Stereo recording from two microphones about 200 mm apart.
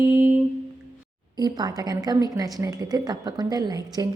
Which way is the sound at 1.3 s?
20° right (ahead or behind).